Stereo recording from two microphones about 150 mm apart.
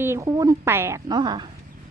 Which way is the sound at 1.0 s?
30° right (ahead or behind).